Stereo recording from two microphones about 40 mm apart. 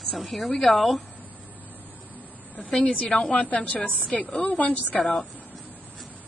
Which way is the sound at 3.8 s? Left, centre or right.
Left.